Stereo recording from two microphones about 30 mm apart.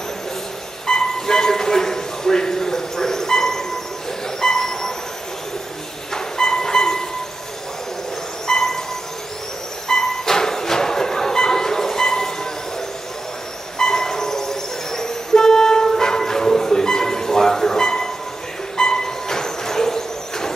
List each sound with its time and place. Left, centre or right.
0.8 s a sound: left
4.4 s train: centre
6.1 s train: left
8.5 s cricket: centre
9.8 s music: centre
13.7 s music: left
18.8 s a sound: left